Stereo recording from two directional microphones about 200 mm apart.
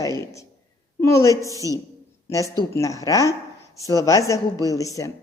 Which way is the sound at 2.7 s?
15° left (ahead or behind).